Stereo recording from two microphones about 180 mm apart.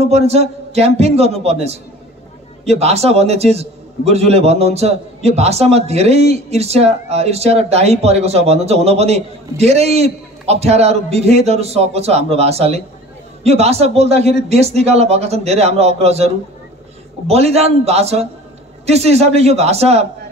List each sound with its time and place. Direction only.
0.0 s a man's voice: 35° right (ahead or behind)
17.3 s a man's voice: 35° right (ahead or behind)